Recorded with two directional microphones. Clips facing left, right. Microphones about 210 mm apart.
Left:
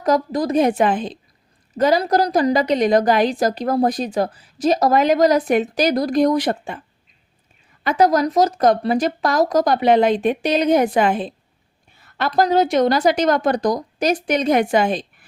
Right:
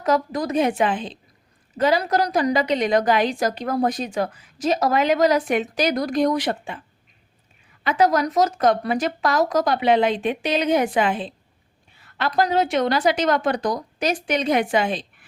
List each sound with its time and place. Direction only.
0.0 s a woman's voice: 35° left (ahead or behind)
7.9 s a woman's voice: 40° left (ahead or behind)
11.9 s a sound: 45° left (ahead or behind)
12.3 s a woman's voice: 40° left (ahead or behind)